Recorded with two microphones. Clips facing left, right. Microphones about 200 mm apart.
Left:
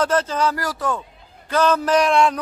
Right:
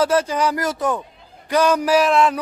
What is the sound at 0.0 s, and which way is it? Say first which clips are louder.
A man's voice: right 2 dB; 10° right (ahead or behind).